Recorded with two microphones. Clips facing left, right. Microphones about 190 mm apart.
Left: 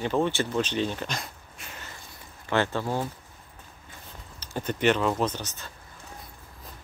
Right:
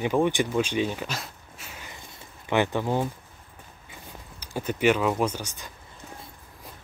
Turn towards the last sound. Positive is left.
turn(degrees=-10)  # may be behind; listen again after turning